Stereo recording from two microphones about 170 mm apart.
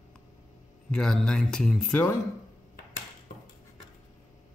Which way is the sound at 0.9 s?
5° left (ahead or behind).